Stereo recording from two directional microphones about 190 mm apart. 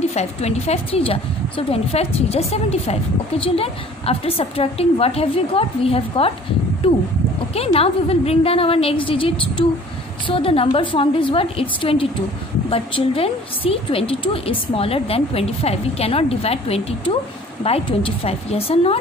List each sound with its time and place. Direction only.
0.1 s a woman's voice: 35° left (ahead or behind)